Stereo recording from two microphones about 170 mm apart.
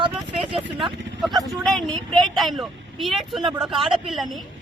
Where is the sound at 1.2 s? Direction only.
Centre (ahead or behind).